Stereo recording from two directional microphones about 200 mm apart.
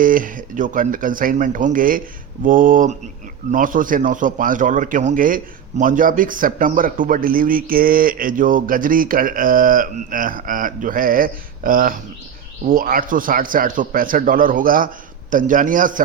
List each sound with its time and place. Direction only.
0.0 s a man's voice: 45° right (ahead or behind)